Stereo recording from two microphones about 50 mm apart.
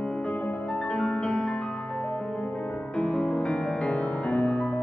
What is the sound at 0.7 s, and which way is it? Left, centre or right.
Music, centre.